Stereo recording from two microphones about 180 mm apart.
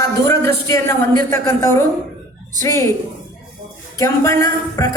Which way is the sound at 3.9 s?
15° left (ahead or behind).